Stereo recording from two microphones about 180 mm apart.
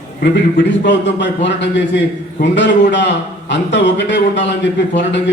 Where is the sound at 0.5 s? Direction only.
85° left.